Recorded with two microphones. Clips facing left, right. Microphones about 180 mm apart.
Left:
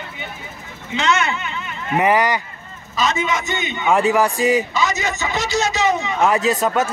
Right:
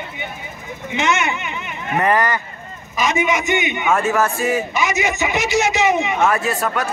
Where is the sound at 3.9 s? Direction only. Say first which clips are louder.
Left 3 dB; 15° left (ahead or behind).